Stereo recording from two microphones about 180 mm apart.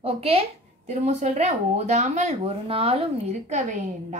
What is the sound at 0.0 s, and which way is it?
Speech, 35° right (ahead or behind).